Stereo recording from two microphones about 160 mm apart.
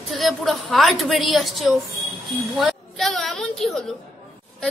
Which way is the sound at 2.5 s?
Centre (ahead or behind).